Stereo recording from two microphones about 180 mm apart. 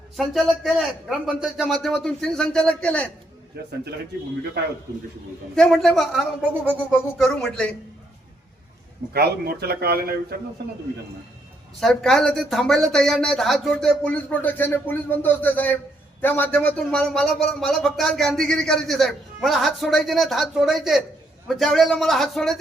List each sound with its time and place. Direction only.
0.2 s speech: centre (ahead or behind)
5.5 s speech: centre (ahead or behind)
6.5 s music: 10° right (ahead or behind)
7.2 s speech: 5° left (ahead or behind)
9.1 s a man's voice: 60° right (ahead or behind)
11.8 s speech: centre (ahead or behind)